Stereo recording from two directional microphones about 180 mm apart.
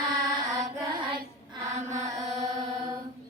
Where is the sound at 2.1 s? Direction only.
20° right (ahead or behind).